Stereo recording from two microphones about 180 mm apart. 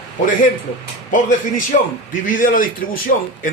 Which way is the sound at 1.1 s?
45° left (ahead or behind).